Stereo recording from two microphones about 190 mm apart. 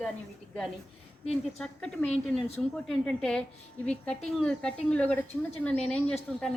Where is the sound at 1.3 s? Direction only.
5° left (ahead or behind).